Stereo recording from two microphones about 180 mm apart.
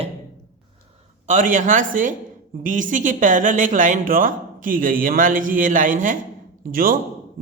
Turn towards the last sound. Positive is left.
turn(degrees=-50)  # may be behind; listen again after turning